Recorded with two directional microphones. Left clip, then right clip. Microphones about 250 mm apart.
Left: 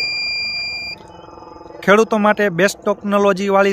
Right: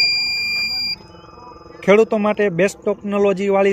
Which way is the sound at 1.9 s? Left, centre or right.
Centre.